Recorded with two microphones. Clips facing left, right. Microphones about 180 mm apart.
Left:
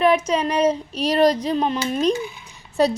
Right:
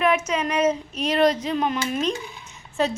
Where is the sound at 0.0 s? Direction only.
35° left (ahead or behind).